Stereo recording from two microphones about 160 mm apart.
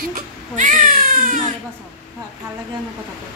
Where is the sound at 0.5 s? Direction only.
55° right (ahead or behind).